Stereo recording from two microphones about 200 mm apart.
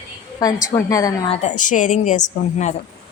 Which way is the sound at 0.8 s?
15° left (ahead or behind).